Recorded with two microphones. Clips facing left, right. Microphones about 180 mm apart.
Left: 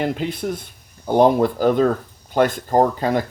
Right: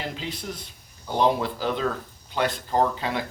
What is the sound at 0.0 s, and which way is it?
Speech, 55° left (ahead or behind).